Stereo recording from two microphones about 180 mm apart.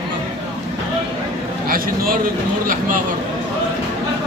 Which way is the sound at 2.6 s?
50° right (ahead or behind).